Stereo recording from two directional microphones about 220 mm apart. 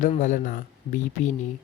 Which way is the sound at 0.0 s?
35° left (ahead or behind).